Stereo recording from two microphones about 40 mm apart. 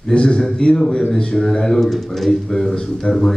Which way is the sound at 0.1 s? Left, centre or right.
Left.